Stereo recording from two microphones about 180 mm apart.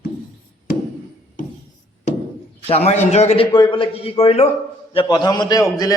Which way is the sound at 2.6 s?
35° left (ahead or behind).